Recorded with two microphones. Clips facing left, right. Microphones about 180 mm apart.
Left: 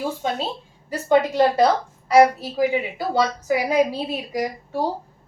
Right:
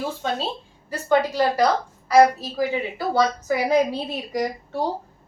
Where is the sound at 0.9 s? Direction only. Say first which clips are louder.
Left 2 dB; 20° left (ahead or behind).